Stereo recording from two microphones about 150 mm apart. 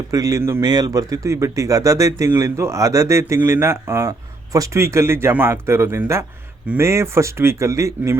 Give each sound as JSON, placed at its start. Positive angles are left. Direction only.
{"t": 0.1, "sound": "a man's voice", "side_deg": -25}